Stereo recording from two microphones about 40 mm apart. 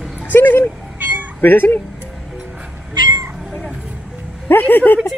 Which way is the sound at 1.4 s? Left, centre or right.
Left.